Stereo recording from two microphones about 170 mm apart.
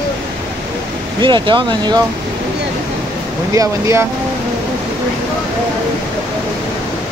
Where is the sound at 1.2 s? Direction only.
30° right (ahead or behind).